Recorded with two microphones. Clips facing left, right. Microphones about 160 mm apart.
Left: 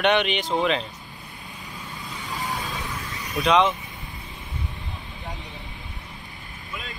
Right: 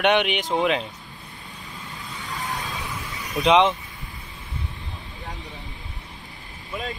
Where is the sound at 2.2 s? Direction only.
Centre (ahead or behind).